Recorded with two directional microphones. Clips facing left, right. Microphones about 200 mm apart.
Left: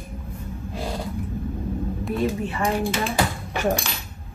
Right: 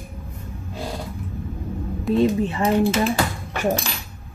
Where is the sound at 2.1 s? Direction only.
25° right (ahead or behind).